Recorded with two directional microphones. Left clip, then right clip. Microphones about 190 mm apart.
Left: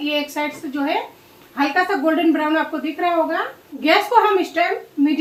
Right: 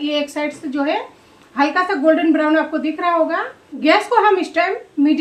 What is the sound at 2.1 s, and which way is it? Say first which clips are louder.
A woman's voice: right 3 dB; 50° right (ahead or behind).